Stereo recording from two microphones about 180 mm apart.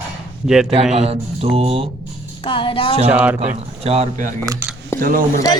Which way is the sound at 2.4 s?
30° left (ahead or behind).